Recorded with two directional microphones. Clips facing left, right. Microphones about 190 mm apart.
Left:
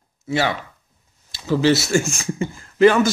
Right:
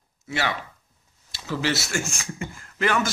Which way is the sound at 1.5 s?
30° left (ahead or behind).